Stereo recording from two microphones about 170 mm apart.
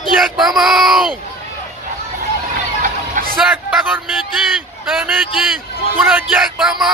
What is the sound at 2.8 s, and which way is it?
Music, 50° right (ahead or behind).